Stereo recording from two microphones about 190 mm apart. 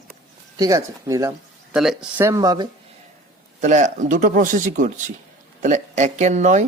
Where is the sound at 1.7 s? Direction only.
5° right (ahead or behind); by 2.6 s 20° right (ahead or behind).